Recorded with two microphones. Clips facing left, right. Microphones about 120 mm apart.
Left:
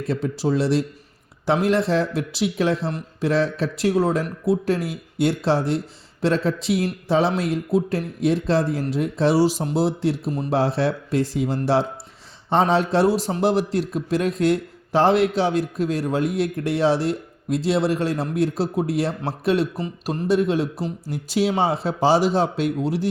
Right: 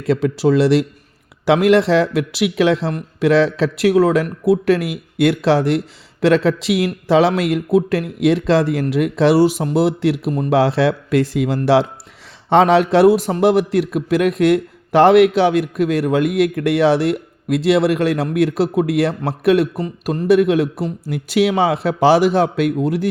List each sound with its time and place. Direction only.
0.1 s a man's voice: 85° right; by 19.8 s 60° right (ahead or behind)
19.8 s speech: 45° right (ahead or behind)
20.2 s a man's voice: 65° right (ahead or behind)